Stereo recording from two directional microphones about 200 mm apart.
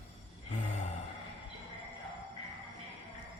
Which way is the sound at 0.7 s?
35° left (ahead or behind).